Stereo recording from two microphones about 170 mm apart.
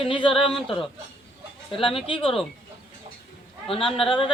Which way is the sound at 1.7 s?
30° left (ahead or behind).